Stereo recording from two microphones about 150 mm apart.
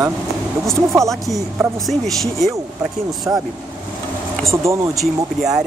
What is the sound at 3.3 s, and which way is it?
Speech, 15° right (ahead or behind).